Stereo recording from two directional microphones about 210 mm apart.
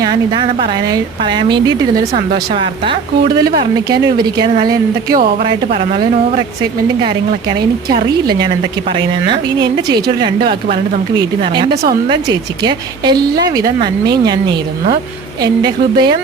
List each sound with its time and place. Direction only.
0.0 s a woman's voice: 20° right (ahead or behind)
4.0 s a woman's voice: 20° right (ahead or behind)
7.9 s a woman's voice: 20° right (ahead or behind)